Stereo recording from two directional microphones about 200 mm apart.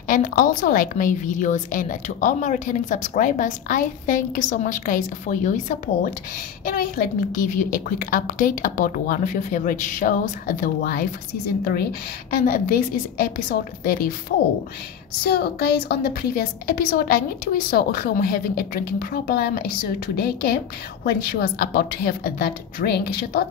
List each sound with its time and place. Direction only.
0.1 s a woman's voice: 40° left (ahead or behind)
15.2 s a woman's voice: 50° left (ahead or behind)